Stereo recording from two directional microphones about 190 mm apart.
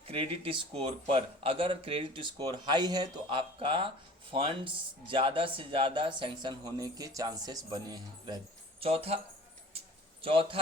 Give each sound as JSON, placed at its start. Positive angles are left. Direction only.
{"t": 0.1, "sound": "a man's voice", "side_deg": -30}
{"t": 8.8, "sound": "speech", "side_deg": -30}
{"t": 9.7, "sound": "a sound", "side_deg": -30}